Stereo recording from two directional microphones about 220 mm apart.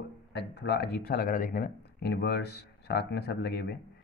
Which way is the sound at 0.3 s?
50° left (ahead or behind).